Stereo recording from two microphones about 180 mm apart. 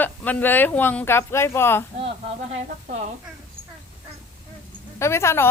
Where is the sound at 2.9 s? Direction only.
40° right (ahead or behind).